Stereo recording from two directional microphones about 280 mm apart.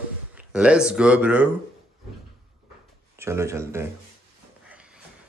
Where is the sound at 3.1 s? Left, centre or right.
Centre.